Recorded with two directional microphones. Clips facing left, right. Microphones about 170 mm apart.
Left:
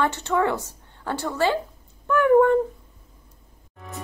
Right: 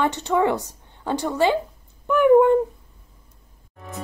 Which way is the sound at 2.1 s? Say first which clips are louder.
Right 2 dB; 15° right (ahead or behind).